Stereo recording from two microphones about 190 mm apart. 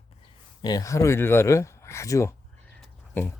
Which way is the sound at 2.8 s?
10° left (ahead or behind).